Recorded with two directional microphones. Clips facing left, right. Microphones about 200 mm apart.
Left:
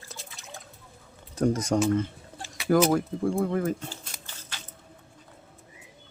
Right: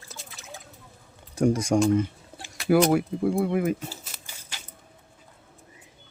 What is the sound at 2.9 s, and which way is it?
Speech, 10° right (ahead or behind).